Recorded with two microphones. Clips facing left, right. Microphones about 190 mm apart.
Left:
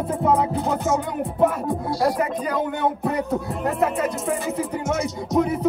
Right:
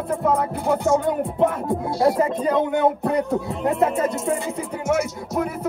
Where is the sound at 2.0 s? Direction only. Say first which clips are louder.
Right 4 dB; 30° right (ahead or behind).